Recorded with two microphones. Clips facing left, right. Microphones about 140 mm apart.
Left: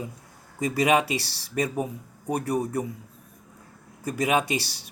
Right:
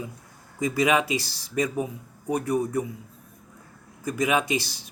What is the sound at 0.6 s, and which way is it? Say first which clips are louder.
A man's voice: left 1 dB; 35° left (ahead or behind).